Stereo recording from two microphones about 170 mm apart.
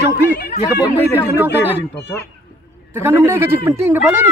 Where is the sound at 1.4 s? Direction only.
10° right (ahead or behind).